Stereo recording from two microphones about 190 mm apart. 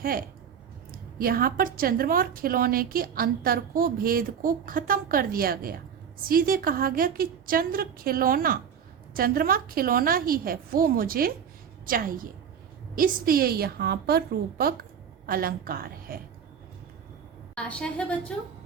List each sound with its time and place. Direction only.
0.0 s a woman's voice: 50° right (ahead or behind)
17.5 s a woman's voice: 5° left (ahead or behind)